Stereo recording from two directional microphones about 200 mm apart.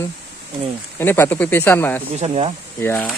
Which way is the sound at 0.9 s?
10° left (ahead or behind).